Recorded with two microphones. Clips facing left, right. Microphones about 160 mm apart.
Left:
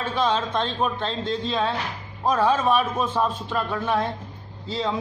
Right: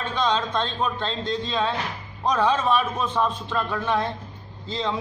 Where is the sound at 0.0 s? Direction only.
5° left (ahead or behind).